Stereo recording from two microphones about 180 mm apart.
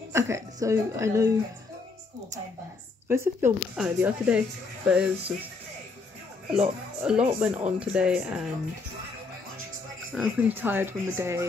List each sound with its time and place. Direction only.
0.1 s speech: 15° right (ahead or behind)
3.1 s speech: 15° right (ahead or behind)
6.5 s speech: 5° right (ahead or behind)
10.1 s speech: 5° right (ahead or behind)